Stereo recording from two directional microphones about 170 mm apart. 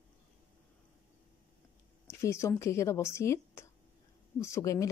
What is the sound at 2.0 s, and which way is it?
Speech, 15° left (ahead or behind).